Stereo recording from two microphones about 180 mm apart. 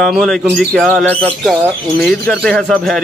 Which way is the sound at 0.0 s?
Centre (ahead or behind).